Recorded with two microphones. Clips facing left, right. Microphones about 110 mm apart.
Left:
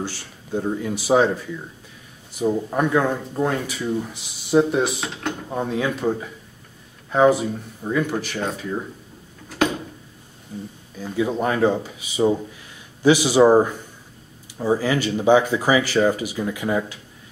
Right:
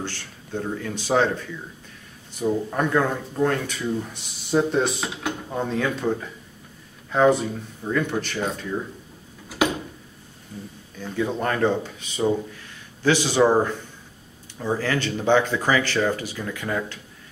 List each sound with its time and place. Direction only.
0.0 s speech: 10° left (ahead or behind)
9.6 s a sound: 10° right (ahead or behind)
10.5 s speech: 15° left (ahead or behind)